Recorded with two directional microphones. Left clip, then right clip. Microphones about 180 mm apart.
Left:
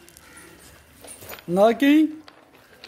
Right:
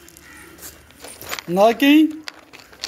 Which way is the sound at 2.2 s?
45° right (ahead or behind).